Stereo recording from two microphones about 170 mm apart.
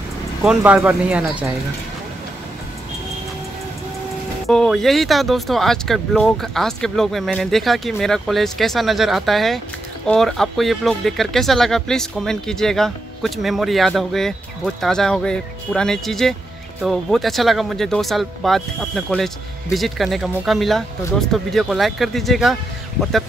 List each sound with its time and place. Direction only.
0.4 s speech: 5° right (ahead or behind)
4.5 s speech: 5° left (ahead or behind)